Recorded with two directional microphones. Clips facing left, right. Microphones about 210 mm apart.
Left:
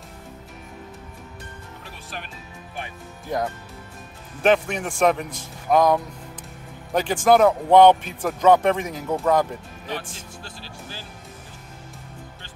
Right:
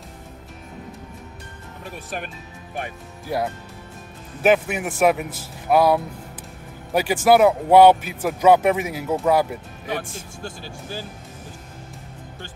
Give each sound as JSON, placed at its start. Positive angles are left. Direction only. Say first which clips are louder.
{"t": 3.3, "sound": "speech", "louder": "right 1 dB", "side_deg": -10}
{"t": 10.4, "sound": "speech", "louder": "right 5 dB", "side_deg": -50}